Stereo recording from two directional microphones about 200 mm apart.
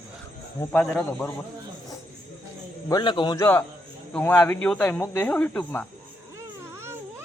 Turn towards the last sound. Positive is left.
turn(degrees=-15)  # may be behind; listen again after turning